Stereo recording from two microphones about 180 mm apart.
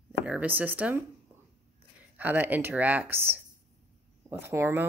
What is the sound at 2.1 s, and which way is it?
Speech, 10° right (ahead or behind).